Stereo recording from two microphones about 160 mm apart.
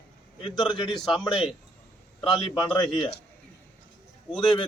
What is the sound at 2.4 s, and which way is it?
Speech, 30° left (ahead or behind).